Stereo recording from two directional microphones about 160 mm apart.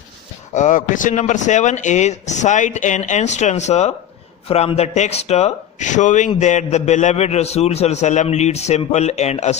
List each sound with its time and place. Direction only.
0.5 s speech: 50° left (ahead or behind)